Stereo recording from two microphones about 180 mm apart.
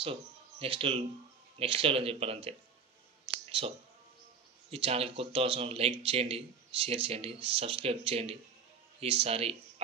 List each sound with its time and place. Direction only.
0.0 s speech: 30° right (ahead or behind)
4.6 s speech: 35° right (ahead or behind)